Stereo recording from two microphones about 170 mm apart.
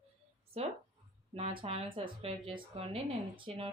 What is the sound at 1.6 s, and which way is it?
Speech, 30° right (ahead or behind).